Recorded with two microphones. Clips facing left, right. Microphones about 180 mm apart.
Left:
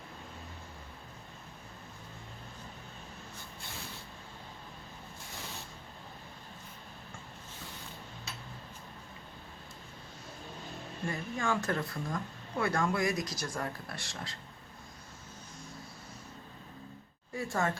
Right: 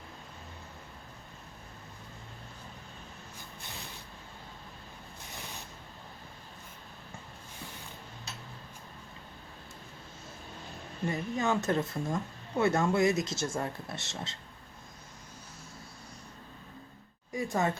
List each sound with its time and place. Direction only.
11.0 s speech: 20° right (ahead or behind)
17.3 s speech: 15° right (ahead or behind)